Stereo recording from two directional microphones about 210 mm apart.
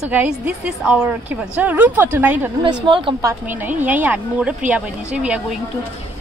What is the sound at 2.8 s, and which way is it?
Speech, 25° right (ahead or behind).